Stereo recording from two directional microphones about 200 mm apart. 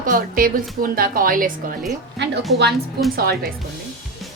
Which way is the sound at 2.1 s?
60° right (ahead or behind).